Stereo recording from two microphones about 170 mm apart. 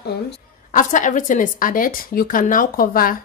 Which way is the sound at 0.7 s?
50° left (ahead or behind).